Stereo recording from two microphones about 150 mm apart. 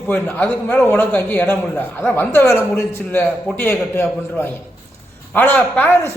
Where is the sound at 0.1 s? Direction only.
10° left (ahead or behind).